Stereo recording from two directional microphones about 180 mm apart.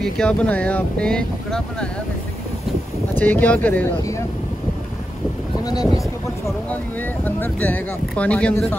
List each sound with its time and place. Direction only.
0.0 s speech: 5° left (ahead or behind)
3.2 s speech: 10° left (ahead or behind)
7.2 s speech: 10° left (ahead or behind)